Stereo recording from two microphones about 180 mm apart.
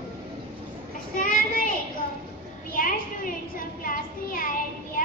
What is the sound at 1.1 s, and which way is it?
Child singing, 50° left (ahead or behind).